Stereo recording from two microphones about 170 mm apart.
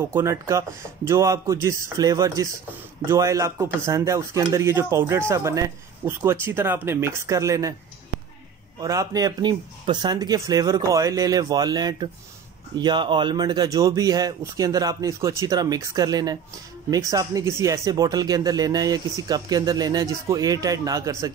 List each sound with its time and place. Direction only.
0.0 s speech: 15° right (ahead or behind)
8.8 s speech: 20° right (ahead or behind)